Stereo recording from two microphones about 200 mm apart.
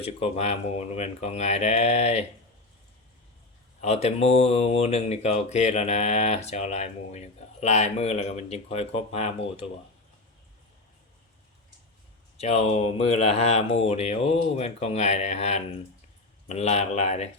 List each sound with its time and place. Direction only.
0.0 s speech: 30° left (ahead or behind)
3.8 s speech: 35° left (ahead or behind)
12.4 s speech: 30° left (ahead or behind)